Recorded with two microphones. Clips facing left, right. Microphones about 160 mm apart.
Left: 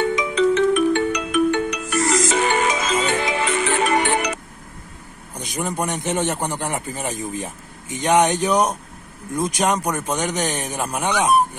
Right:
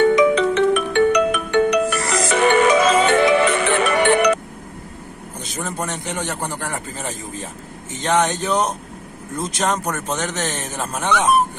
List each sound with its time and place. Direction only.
0.0 s music: 65° right (ahead or behind)
5.4 s a man's voice: 15° left (ahead or behind)